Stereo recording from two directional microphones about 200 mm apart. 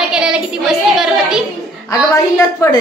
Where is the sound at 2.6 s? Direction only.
15° left (ahead or behind).